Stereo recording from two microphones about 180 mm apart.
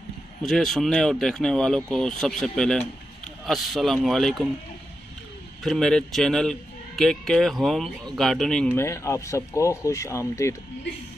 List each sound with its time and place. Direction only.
0.4 s a man's voice: centre (ahead or behind)
5.6 s a man's voice: centre (ahead or behind)
8.7 s speech: 15° left (ahead or behind)